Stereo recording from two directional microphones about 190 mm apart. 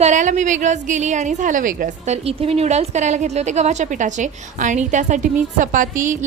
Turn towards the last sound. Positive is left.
turn(degrees=-45)  # may be behind; listen again after turning